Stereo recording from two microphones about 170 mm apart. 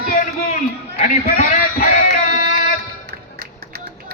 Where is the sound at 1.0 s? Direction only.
45° left (ahead or behind).